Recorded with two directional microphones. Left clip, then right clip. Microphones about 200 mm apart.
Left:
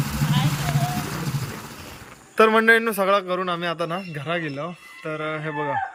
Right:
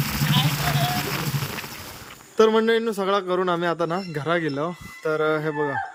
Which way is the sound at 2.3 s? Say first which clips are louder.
Left 2 dB; 5° right (ahead or behind).